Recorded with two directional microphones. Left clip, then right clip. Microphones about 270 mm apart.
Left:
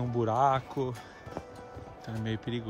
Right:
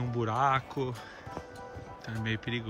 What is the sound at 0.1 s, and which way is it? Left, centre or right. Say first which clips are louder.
Speech: left 2 dB; centre.